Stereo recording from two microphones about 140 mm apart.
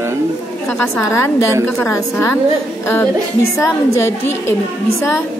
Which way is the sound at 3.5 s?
20° left (ahead or behind).